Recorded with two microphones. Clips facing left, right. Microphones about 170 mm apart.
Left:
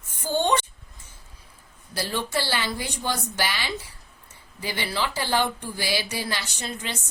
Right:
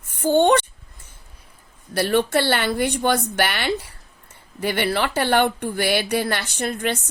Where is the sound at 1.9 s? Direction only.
65° right (ahead or behind).